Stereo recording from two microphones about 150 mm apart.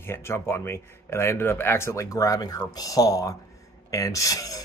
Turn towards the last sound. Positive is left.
turn(degrees=25)  # may be behind; listen again after turning